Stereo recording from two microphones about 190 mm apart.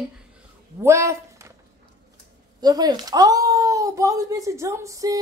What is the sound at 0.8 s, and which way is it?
Speech, 15° right (ahead or behind).